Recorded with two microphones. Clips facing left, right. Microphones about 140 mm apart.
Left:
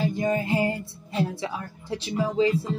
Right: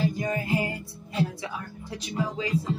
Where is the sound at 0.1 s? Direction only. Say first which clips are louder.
Left 3 dB; 25° left (ahead or behind).